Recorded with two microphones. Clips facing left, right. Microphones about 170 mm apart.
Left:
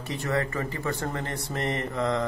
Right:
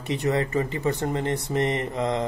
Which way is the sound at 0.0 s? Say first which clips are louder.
Right 4 dB; 20° right (ahead or behind).